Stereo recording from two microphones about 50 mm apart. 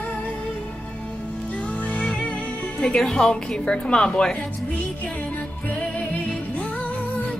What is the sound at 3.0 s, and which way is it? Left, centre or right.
A woman's voice, centre.